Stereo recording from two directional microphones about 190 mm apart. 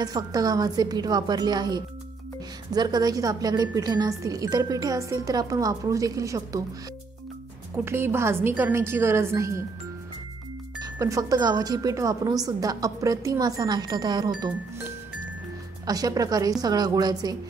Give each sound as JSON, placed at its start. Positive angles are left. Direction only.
{"t": 0.0, "sound": "speech", "side_deg": -20}
{"t": 7.7, "sound": "a woman's voice", "side_deg": -10}
{"t": 10.8, "sound": "speech", "side_deg": -15}
{"t": 15.9, "sound": "speech", "side_deg": -20}